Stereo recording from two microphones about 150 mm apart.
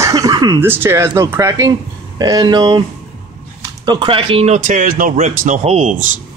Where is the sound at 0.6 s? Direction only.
15° right (ahead or behind); by 2.8 s 30° right (ahead or behind).